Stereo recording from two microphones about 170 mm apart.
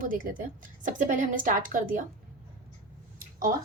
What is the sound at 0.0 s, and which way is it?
A woman's voice, 55° right (ahead or behind).